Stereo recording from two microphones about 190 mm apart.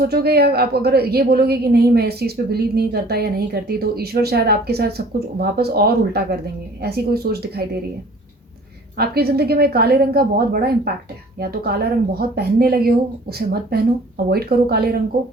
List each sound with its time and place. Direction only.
0.0 s a woman's voice: 55° right (ahead or behind)
9.0 s a woman's voice: 55° right (ahead or behind)